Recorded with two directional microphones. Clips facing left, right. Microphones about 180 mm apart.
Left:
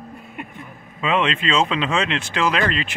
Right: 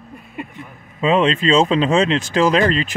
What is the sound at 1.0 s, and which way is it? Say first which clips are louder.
Speech: right 5 dB; 35° right (ahead or behind).